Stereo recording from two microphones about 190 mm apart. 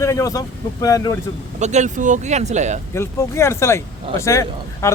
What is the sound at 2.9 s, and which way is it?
Speech, 15° left (ahead or behind).